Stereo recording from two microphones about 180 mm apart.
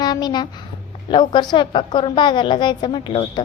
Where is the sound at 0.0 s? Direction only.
25° left (ahead or behind).